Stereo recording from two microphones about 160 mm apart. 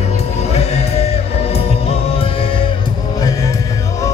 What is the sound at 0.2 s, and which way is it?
Music, 40° left (ahead or behind).